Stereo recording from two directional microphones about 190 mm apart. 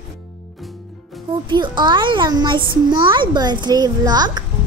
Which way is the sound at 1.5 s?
25° right (ahead or behind).